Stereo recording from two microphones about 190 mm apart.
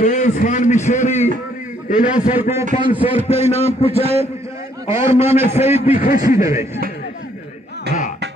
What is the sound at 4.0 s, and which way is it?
Speech, 35° right (ahead or behind).